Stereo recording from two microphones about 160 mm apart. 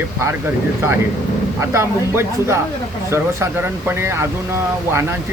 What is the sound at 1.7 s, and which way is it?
Speech, 15° right (ahead or behind).